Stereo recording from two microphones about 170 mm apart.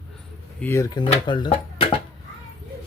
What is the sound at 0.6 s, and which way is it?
Speech, 15° left (ahead or behind).